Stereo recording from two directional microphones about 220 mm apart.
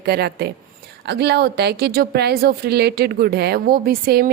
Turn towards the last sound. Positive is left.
turn(degrees=-45)  # may be behind; listen again after turning